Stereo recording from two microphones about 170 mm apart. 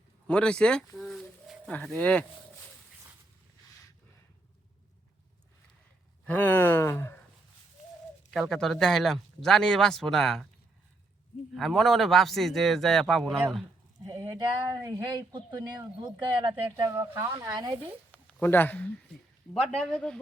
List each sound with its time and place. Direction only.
0.3 s speech: 5° left (ahead or behind)
0.9 s pigeon: centre (ahead or behind)
2.0 s speech: 10° left (ahead or behind)
6.2 s a sound: 10° left (ahead or behind)
8.3 s speech: centre (ahead or behind)
11.5 s speech: centre (ahead or behind)
14.0 s speech: 20° right (ahead or behind)
18.1 s a sound: 10° left (ahead or behind)
19.7 s speech: 5° left (ahead or behind)